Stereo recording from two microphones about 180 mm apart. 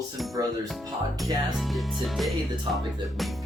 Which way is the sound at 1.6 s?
Centre (ahead or behind).